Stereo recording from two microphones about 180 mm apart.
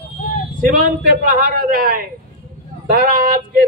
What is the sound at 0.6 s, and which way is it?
A man's voice, 45° right (ahead or behind).